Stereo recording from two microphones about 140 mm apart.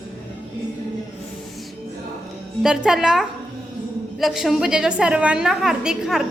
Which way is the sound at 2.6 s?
5° right (ahead or behind).